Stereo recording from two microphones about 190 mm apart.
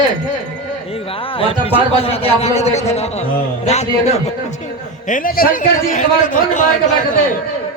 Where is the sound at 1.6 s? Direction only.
30° left (ahead or behind).